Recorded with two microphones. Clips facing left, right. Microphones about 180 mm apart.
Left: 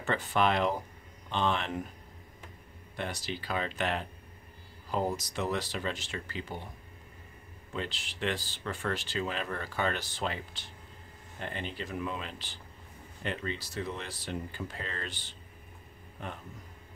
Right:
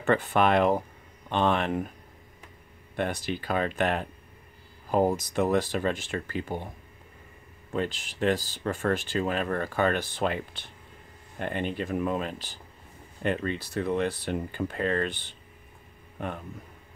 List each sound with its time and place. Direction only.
0.0 s speech: 55° right (ahead or behind)
3.0 s speech: 55° right (ahead or behind)
7.7 s speech: 45° right (ahead or behind)